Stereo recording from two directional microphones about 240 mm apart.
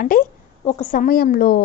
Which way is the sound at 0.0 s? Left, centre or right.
Left.